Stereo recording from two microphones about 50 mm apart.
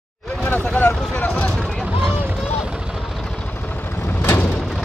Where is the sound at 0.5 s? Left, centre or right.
Left.